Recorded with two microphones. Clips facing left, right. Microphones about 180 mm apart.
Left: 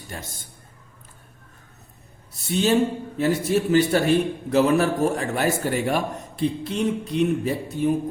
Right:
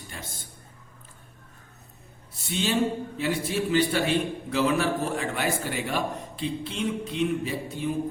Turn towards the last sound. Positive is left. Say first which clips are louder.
# left 7 dB
turn(degrees=45)  # may be behind; listen again after turning